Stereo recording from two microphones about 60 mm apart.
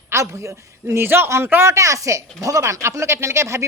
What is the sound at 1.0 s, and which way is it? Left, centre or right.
Speech, right.